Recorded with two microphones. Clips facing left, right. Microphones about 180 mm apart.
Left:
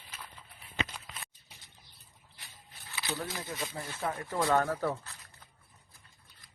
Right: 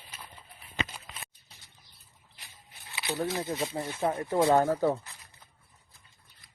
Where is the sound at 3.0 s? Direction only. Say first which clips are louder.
Right 6 dB; 20° right (ahead or behind).